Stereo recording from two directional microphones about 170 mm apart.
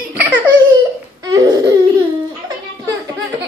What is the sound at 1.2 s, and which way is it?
Baby cry, 20° right (ahead or behind).